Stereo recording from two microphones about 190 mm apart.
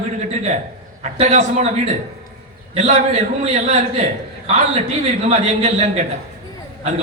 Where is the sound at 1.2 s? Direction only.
40° right (ahead or behind).